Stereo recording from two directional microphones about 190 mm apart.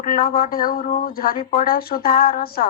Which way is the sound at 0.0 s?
50° left (ahead or behind).